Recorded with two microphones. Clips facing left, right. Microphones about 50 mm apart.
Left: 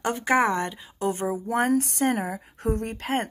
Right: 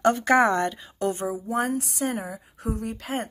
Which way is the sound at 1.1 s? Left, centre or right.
Left.